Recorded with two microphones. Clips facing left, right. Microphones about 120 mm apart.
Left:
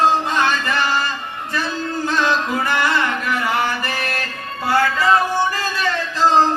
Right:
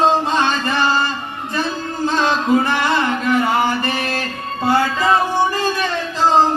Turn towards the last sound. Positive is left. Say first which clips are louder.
# even
turn(degrees=-20)  # may be behind; listen again after turning